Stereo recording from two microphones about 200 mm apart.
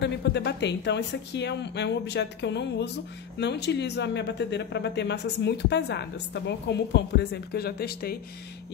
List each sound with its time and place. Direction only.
0.0 s speech: 60° left (ahead or behind)